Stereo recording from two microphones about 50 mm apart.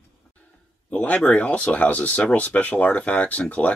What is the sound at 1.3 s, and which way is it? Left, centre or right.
A man's voice, left.